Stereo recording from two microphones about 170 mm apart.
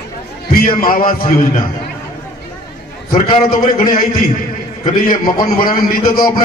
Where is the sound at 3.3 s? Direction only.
55° left (ahead or behind).